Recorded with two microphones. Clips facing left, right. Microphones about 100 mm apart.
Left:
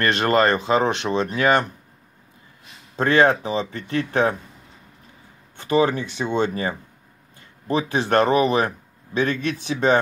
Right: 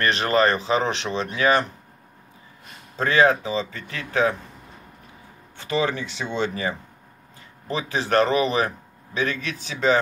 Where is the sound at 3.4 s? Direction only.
55° left (ahead or behind).